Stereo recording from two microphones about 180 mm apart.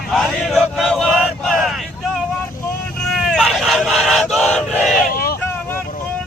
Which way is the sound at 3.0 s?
Centre (ahead or behind).